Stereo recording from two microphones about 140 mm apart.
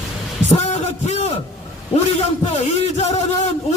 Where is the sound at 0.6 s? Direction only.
50° left (ahead or behind).